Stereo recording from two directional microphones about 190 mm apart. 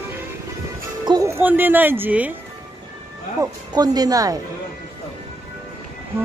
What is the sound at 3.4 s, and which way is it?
A woman's voice, 20° right (ahead or behind).